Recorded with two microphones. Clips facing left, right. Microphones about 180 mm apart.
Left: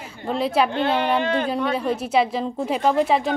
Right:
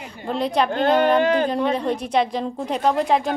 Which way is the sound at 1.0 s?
45° right (ahead or behind).